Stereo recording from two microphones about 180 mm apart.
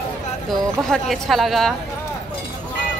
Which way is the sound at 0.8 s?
Centre (ahead or behind).